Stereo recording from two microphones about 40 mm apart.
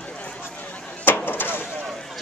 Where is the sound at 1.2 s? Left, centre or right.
Left.